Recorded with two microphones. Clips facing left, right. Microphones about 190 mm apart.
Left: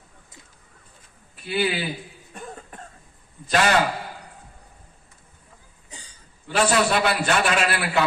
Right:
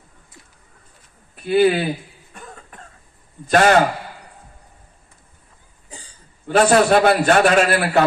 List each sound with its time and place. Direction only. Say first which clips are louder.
1.5 s a man's voice: right 9 dB; 45° right (ahead or behind)
2.3 s cough: left 2 dB; 40° left (ahead or behind)
3.5 s a man's voice: right 6 dB; 50° right (ahead or behind)
6.5 s a man's voice: right 7 dB; 45° right (ahead or behind)